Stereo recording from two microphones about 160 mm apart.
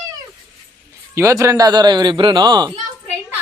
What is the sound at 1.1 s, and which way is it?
A man's voice, 20° right (ahead or behind).